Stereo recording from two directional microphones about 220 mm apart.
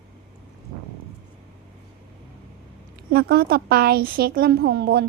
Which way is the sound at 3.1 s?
45° right (ahead or behind).